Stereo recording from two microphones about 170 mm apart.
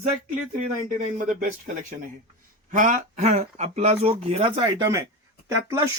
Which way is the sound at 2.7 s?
50° right (ahead or behind).